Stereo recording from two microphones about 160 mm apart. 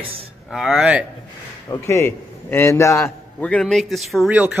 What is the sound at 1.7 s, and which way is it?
A man's voice, 15° left (ahead or behind).